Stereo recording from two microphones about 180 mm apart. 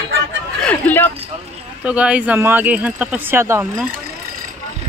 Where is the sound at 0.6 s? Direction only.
10° left (ahead or behind).